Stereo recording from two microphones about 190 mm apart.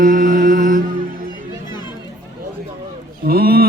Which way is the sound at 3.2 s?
55° right (ahead or behind).